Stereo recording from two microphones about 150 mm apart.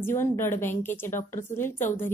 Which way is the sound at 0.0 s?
15° left (ahead or behind).